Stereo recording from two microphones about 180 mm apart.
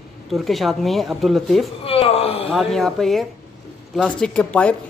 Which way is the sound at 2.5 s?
Centre (ahead or behind).